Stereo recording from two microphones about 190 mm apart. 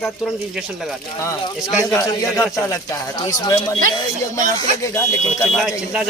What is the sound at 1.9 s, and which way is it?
A man's voice, 15° left (ahead or behind).